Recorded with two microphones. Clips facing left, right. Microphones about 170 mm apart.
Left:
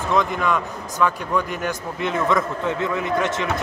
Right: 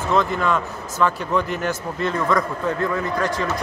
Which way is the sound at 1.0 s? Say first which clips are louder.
Right 1 dB; 10° left (ahead or behind).